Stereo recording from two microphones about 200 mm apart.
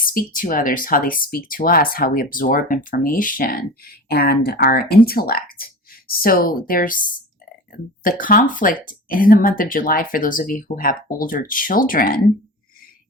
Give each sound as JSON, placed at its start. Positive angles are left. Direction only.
{"t": 0.0, "sound": "speech", "side_deg": 45}
{"t": 8.0, "sound": "speech", "side_deg": 45}